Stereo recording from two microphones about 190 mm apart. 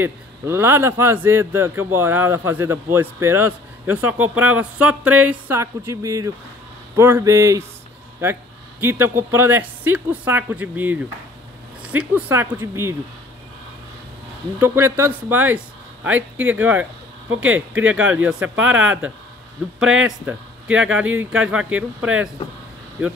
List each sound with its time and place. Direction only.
0.0 s speech: 10° right (ahead or behind)
14.6 s speech: 10° right (ahead or behind)